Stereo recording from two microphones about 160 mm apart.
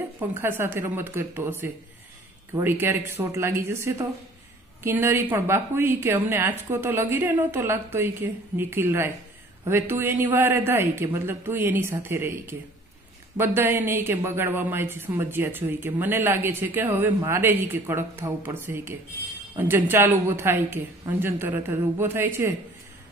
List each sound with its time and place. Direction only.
0.2 s a woman's voice: 15° right (ahead or behind)